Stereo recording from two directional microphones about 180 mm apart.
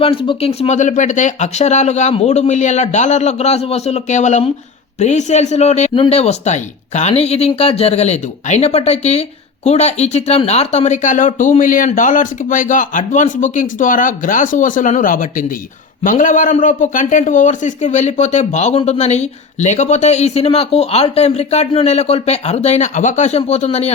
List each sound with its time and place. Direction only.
0.0 s speech: 30° left (ahead or behind)